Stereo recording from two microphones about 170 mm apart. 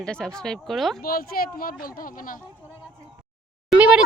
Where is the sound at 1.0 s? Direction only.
60° left (ahead or behind).